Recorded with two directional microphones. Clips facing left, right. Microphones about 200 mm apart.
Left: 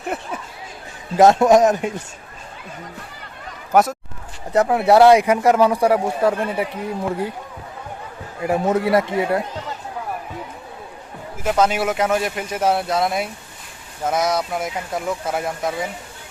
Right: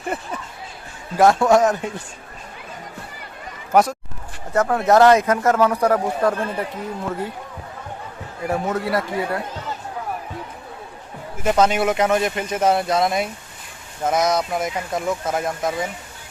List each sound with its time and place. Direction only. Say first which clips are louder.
0.1 s speech: even; centre (ahead or behind)
1.1 s speech: left 3 dB; 20° left (ahead or behind)
3.7 s speech: even; centre (ahead or behind)
4.5 s speech: left 2 dB; 15° left (ahead or behind)
8.4 s speech: left 4 dB; 20° left (ahead or behind)
11.4 s speech: right 1 dB; 5° left (ahead or behind)